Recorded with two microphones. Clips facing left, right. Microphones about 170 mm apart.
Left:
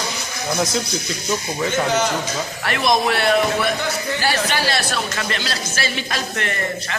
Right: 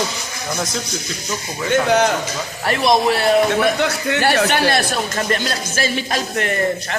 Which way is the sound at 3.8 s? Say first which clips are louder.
Right 4 dB; 70° right (ahead or behind).